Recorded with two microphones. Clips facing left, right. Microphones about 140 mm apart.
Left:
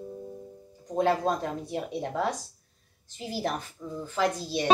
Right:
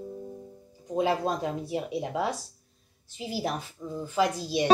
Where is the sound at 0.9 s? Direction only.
10° right (ahead or behind).